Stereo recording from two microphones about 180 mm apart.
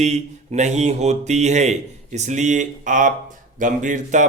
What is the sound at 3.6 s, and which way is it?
Mantra, 45° right (ahead or behind).